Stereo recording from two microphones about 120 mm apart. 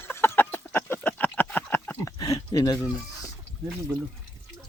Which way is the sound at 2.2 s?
30° left (ahead or behind).